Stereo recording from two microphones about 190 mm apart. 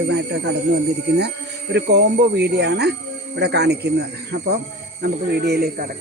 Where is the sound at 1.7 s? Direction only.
60° right (ahead or behind).